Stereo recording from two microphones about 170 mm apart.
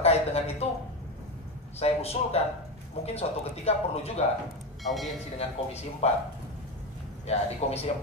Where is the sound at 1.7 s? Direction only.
35° left (ahead or behind).